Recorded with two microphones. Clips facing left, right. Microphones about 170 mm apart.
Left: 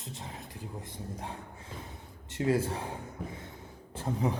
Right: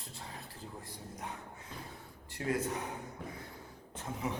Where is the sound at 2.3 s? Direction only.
25° left (ahead or behind).